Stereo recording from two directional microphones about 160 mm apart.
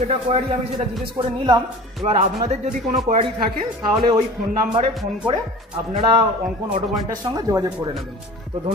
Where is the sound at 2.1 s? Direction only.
40° right (ahead or behind).